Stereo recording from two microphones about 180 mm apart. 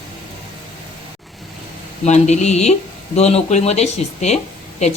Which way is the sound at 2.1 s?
40° left (ahead or behind).